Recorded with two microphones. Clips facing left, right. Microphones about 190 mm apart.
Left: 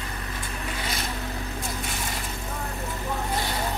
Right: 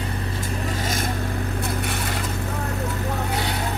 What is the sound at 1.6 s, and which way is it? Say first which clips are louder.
Vehicle: right 6 dB; 65° right (ahead or behind).